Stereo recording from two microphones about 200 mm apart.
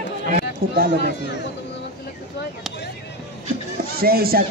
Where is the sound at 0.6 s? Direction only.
45° right (ahead or behind).